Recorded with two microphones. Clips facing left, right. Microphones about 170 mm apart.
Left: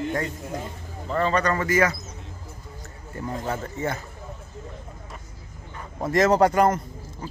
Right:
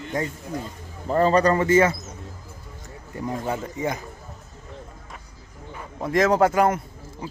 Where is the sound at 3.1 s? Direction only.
15° right (ahead or behind).